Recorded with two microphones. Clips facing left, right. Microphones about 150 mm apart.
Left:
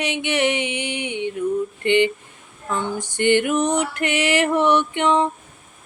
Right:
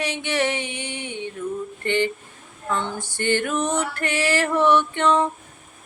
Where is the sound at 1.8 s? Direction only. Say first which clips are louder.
Left 4 dB; 15° left (ahead or behind).